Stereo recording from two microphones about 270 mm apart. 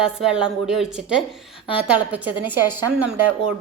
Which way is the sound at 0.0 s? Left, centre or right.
Centre.